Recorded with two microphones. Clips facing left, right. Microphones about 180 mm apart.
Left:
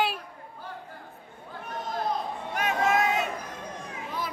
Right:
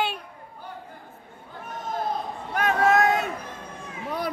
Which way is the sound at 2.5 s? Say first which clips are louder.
Right 5 dB; 50° right (ahead or behind).